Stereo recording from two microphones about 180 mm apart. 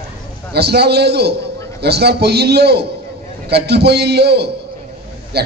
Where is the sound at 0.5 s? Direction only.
65° right (ahead or behind).